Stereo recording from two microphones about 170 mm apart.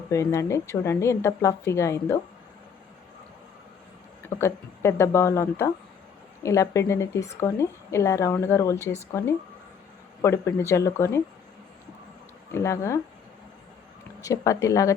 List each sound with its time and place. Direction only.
0.1 s a woman's voice: 15° left (ahead or behind)
4.4 s a woman's voice: 15° left (ahead or behind)
12.5 s a woman's voice: 15° left (ahead or behind)
14.3 s speech: 20° left (ahead or behind)